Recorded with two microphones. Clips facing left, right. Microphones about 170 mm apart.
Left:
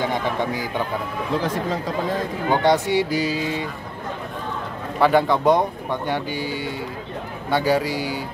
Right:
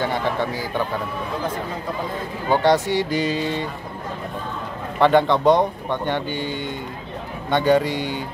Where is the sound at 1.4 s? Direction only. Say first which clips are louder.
Left 3 dB; 85° left.